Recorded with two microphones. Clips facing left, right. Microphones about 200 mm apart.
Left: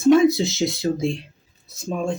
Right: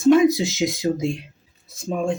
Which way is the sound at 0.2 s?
15° right (ahead or behind).